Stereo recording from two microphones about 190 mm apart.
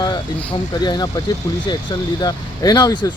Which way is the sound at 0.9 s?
20° left (ahead or behind).